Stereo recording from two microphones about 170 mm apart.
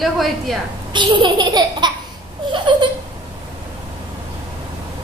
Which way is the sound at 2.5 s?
30° right (ahead or behind).